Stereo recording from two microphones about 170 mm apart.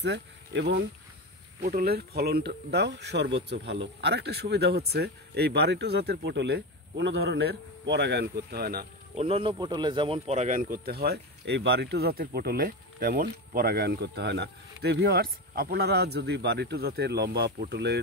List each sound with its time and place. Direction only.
0.0 s speech: 85° right
1.7 s speech: 60° right (ahead or behind)
9.1 s speech: 35° right (ahead or behind); by 18.0 s 75° right (ahead or behind)